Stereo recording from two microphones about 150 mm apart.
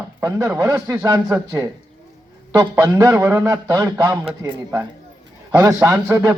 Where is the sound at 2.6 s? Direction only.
20° right (ahead or behind).